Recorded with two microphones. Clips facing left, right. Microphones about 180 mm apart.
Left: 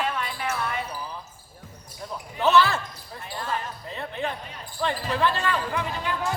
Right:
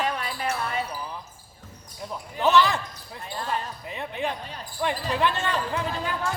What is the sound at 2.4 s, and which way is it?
Speech, 15° right (ahead or behind).